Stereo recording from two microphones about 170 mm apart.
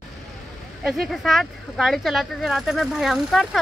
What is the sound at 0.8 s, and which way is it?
A woman's voice, centre (ahead or behind).